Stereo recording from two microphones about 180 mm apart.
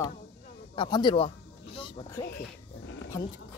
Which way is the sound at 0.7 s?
25° left (ahead or behind).